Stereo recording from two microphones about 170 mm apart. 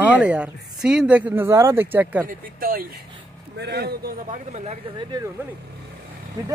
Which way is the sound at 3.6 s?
75° right (ahead or behind).